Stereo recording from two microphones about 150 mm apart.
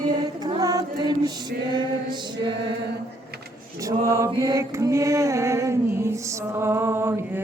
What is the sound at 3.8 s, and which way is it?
Music, 20° right (ahead or behind).